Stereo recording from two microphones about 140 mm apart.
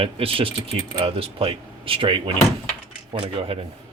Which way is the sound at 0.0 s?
40° right (ahead or behind).